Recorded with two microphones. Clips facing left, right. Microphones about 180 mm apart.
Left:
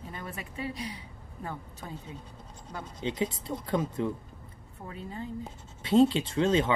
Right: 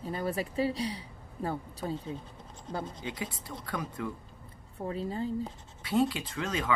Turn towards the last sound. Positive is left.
turn(degrees=25)  # may be behind; listen again after turning